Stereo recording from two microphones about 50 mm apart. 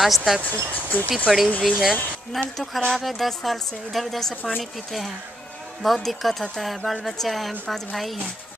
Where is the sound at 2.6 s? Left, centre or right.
Centre.